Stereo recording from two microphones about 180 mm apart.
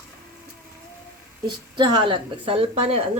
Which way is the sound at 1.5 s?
25° right (ahead or behind).